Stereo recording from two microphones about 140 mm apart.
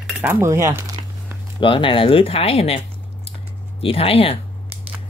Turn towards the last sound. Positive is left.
turn(degrees=45)  # may be behind; listen again after turning